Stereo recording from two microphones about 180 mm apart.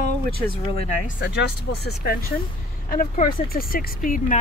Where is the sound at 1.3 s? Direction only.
65° left (ahead or behind); by 4.3 s 50° left (ahead or behind).